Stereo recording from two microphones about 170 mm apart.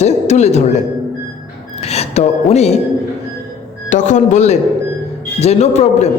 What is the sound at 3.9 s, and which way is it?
A man's voice, 45° left (ahead or behind).